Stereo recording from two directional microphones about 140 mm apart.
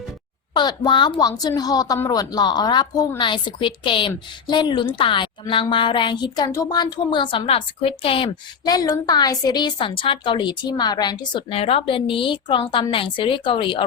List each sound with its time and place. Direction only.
0.5 s a woman's voice: 30° left (ahead or behind)
8.6 s a woman's voice: 25° left (ahead or behind)